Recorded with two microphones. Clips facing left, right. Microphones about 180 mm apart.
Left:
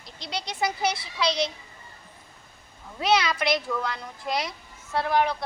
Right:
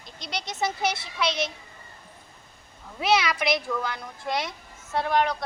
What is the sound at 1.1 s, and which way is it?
Speech, 5° right (ahead or behind).